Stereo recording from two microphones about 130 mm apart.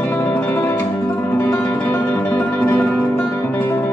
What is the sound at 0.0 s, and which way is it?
Music, 15° left (ahead or behind).